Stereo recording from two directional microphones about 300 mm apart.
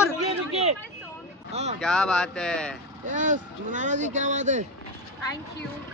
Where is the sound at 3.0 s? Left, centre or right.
Right.